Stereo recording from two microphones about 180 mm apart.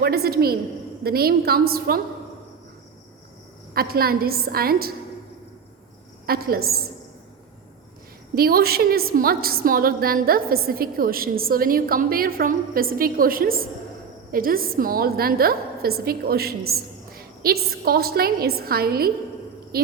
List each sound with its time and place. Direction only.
0.0 s a woman's voice: 60° right (ahead or behind)
3.8 s a woman's voice: 55° right (ahead or behind)
6.2 s a woman's voice: 55° right (ahead or behind)
8.4 s a woman's voice: 55° right (ahead or behind)